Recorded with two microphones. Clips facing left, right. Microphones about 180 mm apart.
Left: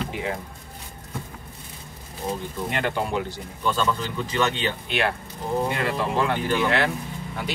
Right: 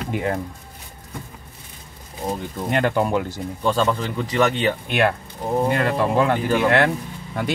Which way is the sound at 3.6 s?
30° right (ahead or behind).